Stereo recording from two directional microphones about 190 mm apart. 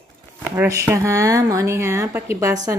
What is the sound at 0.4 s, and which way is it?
Speech, 10° right (ahead or behind).